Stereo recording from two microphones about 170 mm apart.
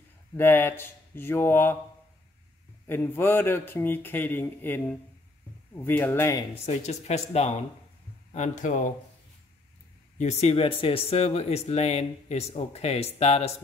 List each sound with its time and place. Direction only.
0.4 s speech: 15° left (ahead or behind)
2.9 s speech: 15° left (ahead or behind)
6.6 s speech: 40° left (ahead or behind)
10.1 s speech: 40° left (ahead or behind)